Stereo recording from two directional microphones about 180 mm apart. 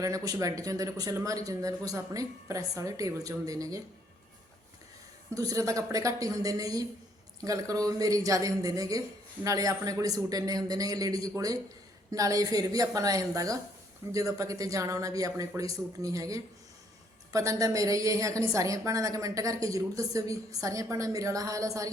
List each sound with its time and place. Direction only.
0.0 s speech: 20° right (ahead or behind)
5.3 s a woman's voice: 20° right (ahead or behind)